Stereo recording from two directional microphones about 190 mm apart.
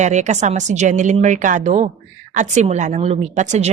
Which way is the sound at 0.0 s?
40° right (ahead or behind).